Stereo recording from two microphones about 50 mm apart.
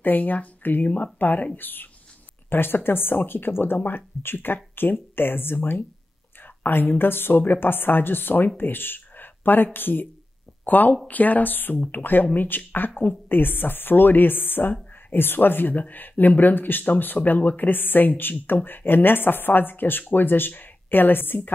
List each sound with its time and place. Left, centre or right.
0.0 s speech: left